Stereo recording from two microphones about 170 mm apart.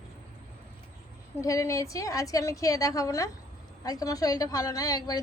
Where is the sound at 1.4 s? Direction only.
20° left (ahead or behind).